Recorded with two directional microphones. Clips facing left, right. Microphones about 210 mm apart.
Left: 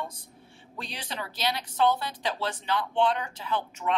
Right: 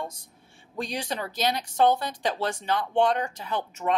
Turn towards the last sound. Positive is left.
turn(degrees=-45)  # may be behind; listen again after turning